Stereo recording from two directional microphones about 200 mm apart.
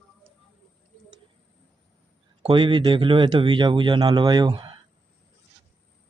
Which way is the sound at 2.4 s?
25° right (ahead or behind).